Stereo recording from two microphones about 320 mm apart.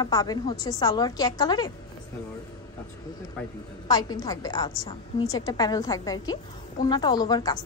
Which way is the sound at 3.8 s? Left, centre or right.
Centre.